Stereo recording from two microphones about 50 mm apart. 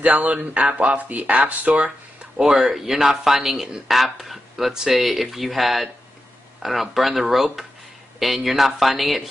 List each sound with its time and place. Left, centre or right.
0.0 s speech: right
2.3 s speech: centre